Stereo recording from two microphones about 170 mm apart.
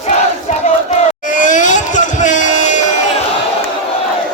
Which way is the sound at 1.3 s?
50° left (ahead or behind).